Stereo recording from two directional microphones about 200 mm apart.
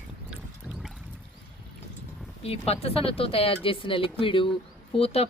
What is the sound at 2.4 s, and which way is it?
Speech, 30° left (ahead or behind).